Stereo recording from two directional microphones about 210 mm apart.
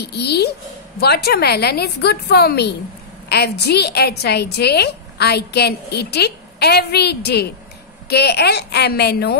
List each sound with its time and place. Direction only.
0.0 s a woman's voice: 50° left (ahead or behind)